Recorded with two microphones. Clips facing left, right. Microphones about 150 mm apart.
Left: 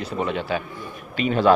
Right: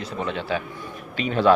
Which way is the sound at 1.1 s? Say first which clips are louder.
Left 1 dB; 5° left (ahead or behind).